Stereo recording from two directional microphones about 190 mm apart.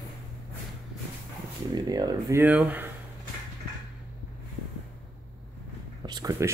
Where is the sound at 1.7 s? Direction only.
20° right (ahead or behind).